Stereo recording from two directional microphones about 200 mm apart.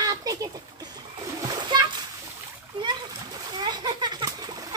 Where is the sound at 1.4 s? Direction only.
20° right (ahead or behind).